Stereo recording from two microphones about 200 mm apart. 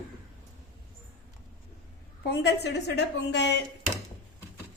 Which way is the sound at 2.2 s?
55° left (ahead or behind).